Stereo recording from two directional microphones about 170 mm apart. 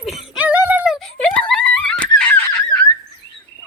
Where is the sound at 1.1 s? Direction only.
5° left (ahead or behind).